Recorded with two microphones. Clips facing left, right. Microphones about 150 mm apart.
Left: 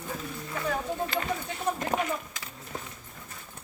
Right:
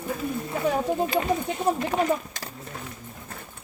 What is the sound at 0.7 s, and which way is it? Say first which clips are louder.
Speech: right 6 dB; 20° right (ahead or behind).